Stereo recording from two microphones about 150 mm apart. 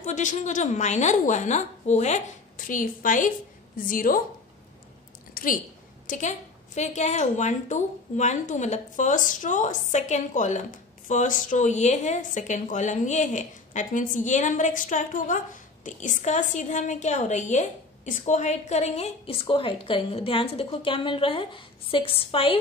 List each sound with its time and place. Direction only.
0.0 s a woman's voice: 55° left (ahead or behind)
5.3 s a sound: 65° left (ahead or behind)
6.0 s a woman's voice: 55° left (ahead or behind); by 22.6 s 35° left (ahead or behind)